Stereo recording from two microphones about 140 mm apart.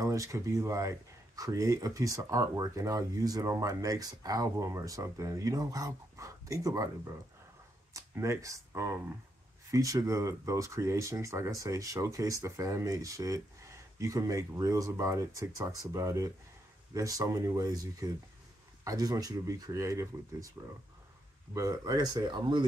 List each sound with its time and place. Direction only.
0.0 s speech: 20° right (ahead or behind)
7.9 s speech: 20° right (ahead or behind)
21.5 s speech: 25° right (ahead or behind)